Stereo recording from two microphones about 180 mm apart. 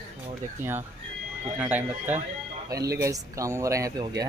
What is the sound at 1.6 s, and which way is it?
Speech, 10° right (ahead or behind).